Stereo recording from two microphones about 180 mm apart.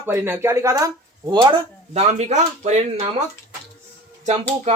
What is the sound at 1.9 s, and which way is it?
Speech, 35° right (ahead or behind).